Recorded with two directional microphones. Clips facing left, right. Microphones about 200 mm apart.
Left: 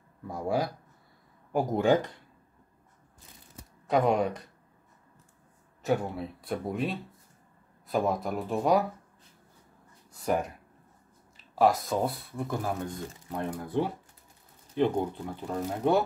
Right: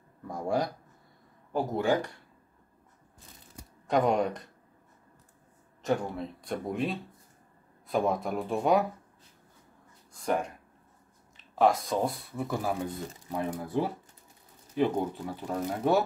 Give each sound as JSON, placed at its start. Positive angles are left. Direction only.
{"t": 0.3, "sound": "speech", "side_deg": 5}
{"t": 1.5, "sound": "speech", "side_deg": 15}
{"t": 3.8, "sound": "speech", "side_deg": 0}
{"t": 5.8, "sound": "speech", "side_deg": 5}
{"t": 10.1, "sound": "a sound", "side_deg": 5}
{"t": 11.3, "sound": "speech", "side_deg": 0}